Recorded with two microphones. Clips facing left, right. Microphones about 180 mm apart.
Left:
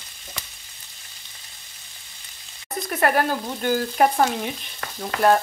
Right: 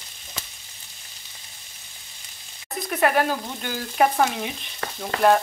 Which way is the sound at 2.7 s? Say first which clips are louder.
Even; centre (ahead or behind).